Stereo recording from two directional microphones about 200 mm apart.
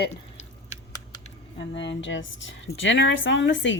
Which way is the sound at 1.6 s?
65° left (ahead or behind).